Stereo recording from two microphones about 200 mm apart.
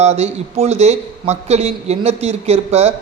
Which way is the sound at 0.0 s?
30° right (ahead or behind).